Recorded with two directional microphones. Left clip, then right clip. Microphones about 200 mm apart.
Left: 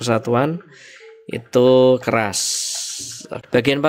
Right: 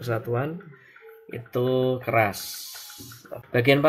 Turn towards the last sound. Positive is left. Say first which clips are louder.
# left 3 dB
turn(degrees=55)  # may be behind; listen again after turning